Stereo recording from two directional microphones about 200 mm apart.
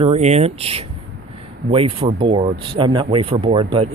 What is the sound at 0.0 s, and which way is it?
Speech, 35° right (ahead or behind).